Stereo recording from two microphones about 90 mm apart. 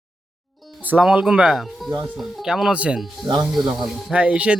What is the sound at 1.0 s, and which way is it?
Speech, 10° right (ahead or behind).